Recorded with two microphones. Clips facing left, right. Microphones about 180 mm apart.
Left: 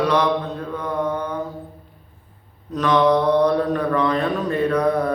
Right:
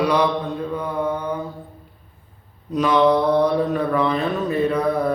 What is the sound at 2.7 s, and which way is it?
Mantra, 10° right (ahead or behind).